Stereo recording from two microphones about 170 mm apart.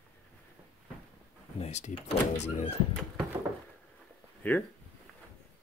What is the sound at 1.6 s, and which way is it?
Speech, 40° left (ahead or behind).